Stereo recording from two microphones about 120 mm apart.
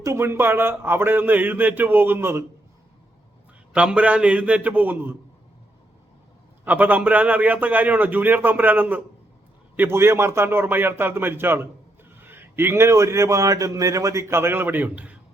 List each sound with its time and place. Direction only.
0.0 s a man's voice: 25° right (ahead or behind)
3.7 s a man's voice: 10° right (ahead or behind)
6.7 s a man's voice: 15° right (ahead or behind)